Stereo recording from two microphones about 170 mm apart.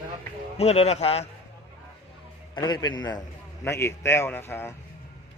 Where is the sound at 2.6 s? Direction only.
25° left (ahead or behind).